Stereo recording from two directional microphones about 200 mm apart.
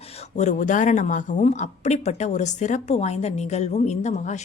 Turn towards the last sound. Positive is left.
turn(degrees=35)  # may be behind; listen again after turning